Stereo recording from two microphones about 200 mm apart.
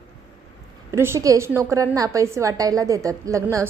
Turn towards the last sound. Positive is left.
turn(degrees=-15)  # may be behind; listen again after turning